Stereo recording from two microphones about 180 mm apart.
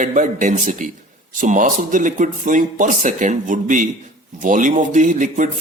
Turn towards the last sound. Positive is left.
turn(degrees=-45)  # may be behind; listen again after turning